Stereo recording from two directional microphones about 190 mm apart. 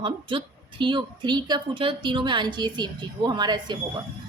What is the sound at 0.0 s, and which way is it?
A woman's voice, 25° right (ahead or behind).